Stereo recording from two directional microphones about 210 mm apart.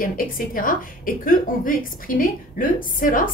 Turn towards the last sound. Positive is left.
turn(degrees=40)  # may be behind; listen again after turning